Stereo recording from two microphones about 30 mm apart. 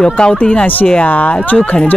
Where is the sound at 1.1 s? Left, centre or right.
Left.